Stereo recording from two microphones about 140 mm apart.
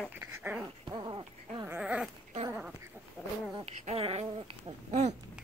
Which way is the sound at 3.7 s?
45° right (ahead or behind).